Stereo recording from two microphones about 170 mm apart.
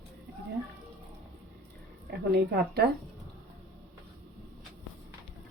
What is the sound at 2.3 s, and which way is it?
Speech, 70° right (ahead or behind).